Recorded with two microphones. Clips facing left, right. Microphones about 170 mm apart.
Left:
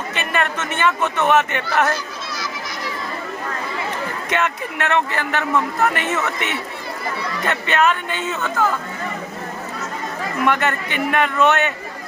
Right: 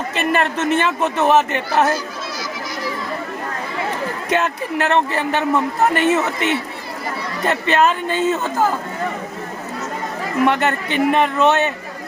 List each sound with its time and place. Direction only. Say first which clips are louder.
0.1 s speech: right 4 dB; 35° right (ahead or behind)
4.3 s speech: right 3 dB; 35° right (ahead or behind)
10.4 s a man's voice: right 2 dB; 30° right (ahead or behind)